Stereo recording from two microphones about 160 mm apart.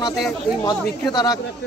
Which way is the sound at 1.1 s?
25° left (ahead or behind).